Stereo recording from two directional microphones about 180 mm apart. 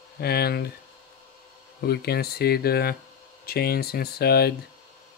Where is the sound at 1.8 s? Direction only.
60° left (ahead or behind).